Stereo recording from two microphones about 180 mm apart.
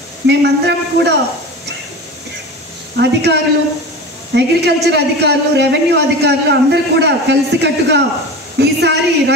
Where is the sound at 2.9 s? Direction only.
70° right (ahead or behind).